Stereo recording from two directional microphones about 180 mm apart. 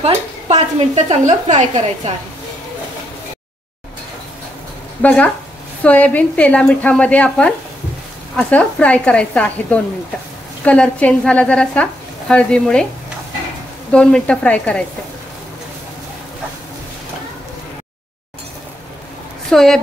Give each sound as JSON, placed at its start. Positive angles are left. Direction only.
{"t": 0.0, "sound": "a woman's voice", "side_deg": -35}
{"t": 5.0, "sound": "a woman's voice", "side_deg": 10}
{"t": 13.9, "sound": "a woman's voice", "side_deg": 5}
{"t": 19.5, "sound": "a woman's voice", "side_deg": 0}